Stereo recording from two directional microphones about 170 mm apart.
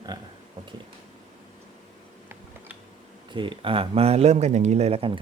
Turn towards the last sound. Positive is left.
turn(degrees=-35)  # may be behind; listen again after turning